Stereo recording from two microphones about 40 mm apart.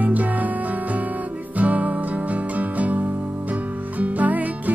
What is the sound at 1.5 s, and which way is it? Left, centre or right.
Music, right.